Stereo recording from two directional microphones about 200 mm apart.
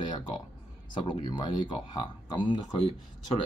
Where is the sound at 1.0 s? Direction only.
25° left (ahead or behind).